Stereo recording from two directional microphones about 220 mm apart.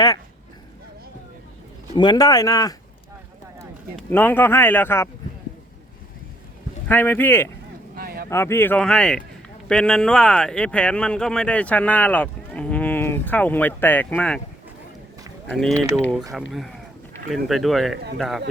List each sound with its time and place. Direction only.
2.0 s speech: 20° left (ahead or behind)
4.1 s speech: 10° left (ahead or behind)
6.8 s speech: 10° left (ahead or behind)
7.9 s a sound: 45° right (ahead or behind)
8.3 s speech: 10° left (ahead or behind)
15.4 s speech: 5° left (ahead or behind)
17.3 s speech: centre (ahead or behind)